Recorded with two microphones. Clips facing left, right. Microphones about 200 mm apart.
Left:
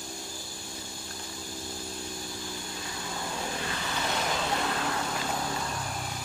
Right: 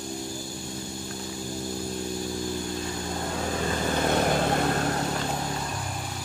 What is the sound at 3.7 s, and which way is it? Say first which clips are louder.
Vehicle: right 8 dB; 45° right (ahead or behind).